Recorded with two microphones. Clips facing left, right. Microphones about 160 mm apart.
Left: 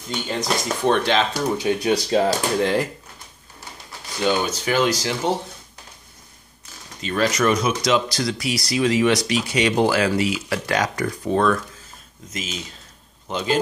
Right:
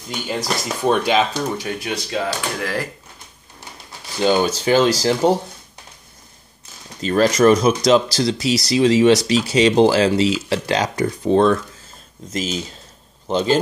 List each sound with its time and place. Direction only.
0.1 s speech: 5° right (ahead or behind)
1.3 s speech: 20° left (ahead or behind)
1.8 s speech: 35° left (ahead or behind)
2.6 s speech: 20° left (ahead or behind)
4.2 s speech: 30° right (ahead or behind)
7.0 s speech: 40° right (ahead or behind)